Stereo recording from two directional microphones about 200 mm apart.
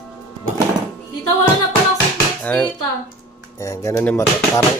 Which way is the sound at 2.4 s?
5° left (ahead or behind).